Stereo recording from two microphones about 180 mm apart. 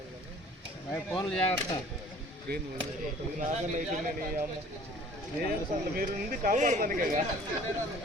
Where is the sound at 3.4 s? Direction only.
45° right (ahead or behind).